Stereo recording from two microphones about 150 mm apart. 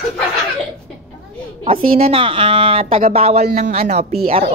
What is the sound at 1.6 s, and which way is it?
A woman's voice, 40° right (ahead or behind).